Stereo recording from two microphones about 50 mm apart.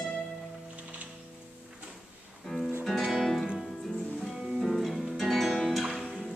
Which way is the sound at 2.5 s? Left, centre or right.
Centre.